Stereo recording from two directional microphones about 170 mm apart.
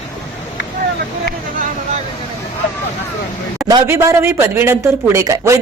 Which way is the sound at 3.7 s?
20° right (ahead or behind).